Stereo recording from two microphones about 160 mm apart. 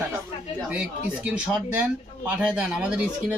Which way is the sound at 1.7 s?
10° right (ahead or behind).